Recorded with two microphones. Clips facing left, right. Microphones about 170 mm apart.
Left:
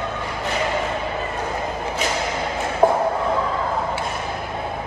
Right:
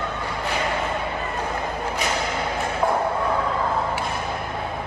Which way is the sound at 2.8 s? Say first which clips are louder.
Left 6 dB; 45° left (ahead or behind).